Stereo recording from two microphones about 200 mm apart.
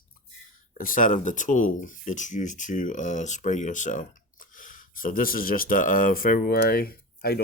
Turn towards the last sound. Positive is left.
turn(degrees=50)  # may be behind; listen again after turning